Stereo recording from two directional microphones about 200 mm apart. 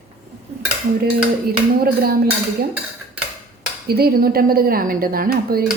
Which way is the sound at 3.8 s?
50° right (ahead or behind).